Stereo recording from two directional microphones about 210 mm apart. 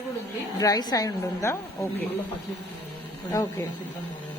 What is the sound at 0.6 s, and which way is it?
Speech, 15° left (ahead or behind).